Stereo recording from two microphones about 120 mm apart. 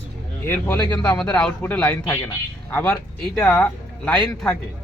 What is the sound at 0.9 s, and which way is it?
Speech, 10° left (ahead or behind).